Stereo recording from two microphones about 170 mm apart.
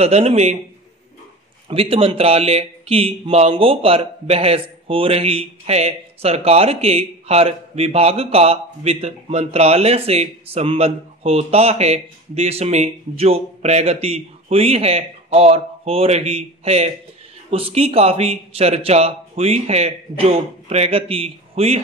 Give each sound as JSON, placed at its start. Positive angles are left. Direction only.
{"t": 0.0, "sound": "speech", "side_deg": -40}
{"t": 1.7, "sound": "speech", "side_deg": -35}